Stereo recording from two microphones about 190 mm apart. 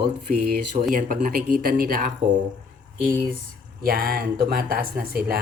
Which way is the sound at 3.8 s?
50° right (ahead or behind).